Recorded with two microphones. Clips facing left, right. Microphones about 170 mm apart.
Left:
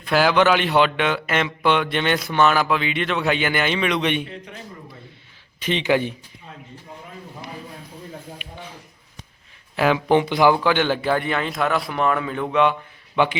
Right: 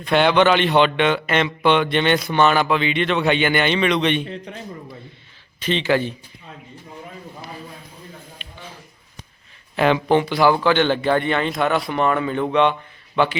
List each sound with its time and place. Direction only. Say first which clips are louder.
0.0 s a man's voice: right 2 dB; 5° left (ahead or behind)
5.5 s speech: right 1 dB; 15° left (ahead or behind)
8.4 s a sound: left 4 dB; 10° left (ahead or behind)
9.7 s a man's voice: right 1 dB; 5° left (ahead or behind)
10.2 s a man's voice: even; 15° left (ahead or behind)
13.1 s speech: right 1 dB; 15° left (ahead or behind)